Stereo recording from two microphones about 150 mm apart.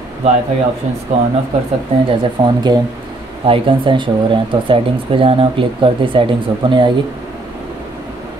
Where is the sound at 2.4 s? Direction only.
40° right (ahead or behind).